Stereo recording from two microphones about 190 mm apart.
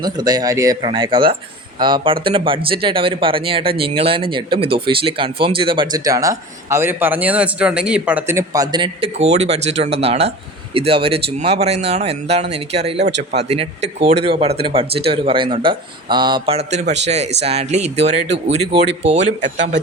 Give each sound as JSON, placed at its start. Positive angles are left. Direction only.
{"t": 0.0, "sound": "speech", "side_deg": -20}
{"t": 13.0, "sound": "speech", "side_deg": -65}
{"t": 13.4, "sound": "speech", "side_deg": -35}